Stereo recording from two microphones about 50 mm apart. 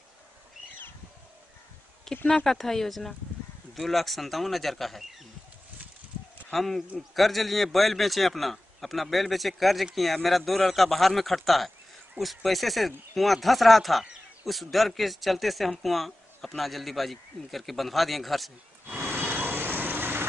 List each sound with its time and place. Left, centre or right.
2.2 s speech: centre
2.5 s a man's voice: centre
6.5 s a man's voice: centre
18.9 s vehicle: right